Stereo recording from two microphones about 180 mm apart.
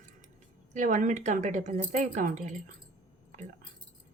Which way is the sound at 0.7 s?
45° right (ahead or behind).